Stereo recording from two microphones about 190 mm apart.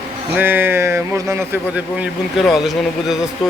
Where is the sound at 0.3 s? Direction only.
10° right (ahead or behind).